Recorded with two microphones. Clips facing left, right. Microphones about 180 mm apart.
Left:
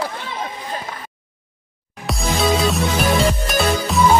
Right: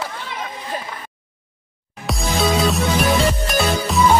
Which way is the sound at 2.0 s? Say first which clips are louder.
Even; centre (ahead or behind).